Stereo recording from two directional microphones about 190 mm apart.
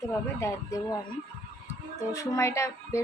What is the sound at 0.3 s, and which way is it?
Female singing, 15° left (ahead or behind).